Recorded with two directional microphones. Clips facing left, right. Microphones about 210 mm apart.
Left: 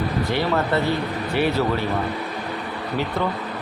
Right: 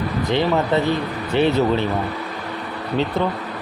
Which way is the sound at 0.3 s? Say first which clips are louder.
Right 5 dB; 20° right (ahead or behind).